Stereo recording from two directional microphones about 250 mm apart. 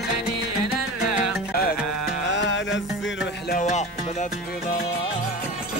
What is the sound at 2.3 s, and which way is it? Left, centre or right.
Music, left.